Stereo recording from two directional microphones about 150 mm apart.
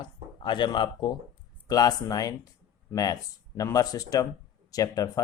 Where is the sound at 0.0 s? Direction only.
30° left (ahead or behind).